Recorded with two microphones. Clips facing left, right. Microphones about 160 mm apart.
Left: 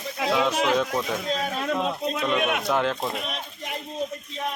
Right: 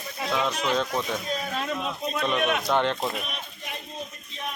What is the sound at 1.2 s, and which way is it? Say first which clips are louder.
Speech: left 3 dB; 85° left.